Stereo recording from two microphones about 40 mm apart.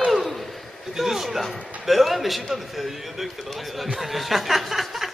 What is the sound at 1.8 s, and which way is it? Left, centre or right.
A man's voice, centre.